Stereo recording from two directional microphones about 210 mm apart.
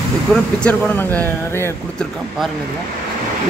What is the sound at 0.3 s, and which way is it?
Speech, 5° left (ahead or behind).